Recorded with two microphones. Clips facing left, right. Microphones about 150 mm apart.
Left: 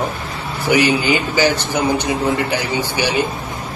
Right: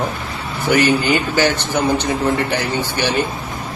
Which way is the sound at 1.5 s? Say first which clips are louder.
Even; 10° left (ahead or behind).